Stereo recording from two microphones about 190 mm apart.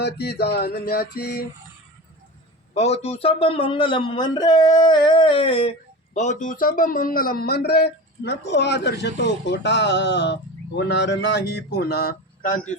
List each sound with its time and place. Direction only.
0.0 s speech: 60° left (ahead or behind)
2.7 s a man's voice: 35° left (ahead or behind)
6.1 s speech: 40° left (ahead or behind)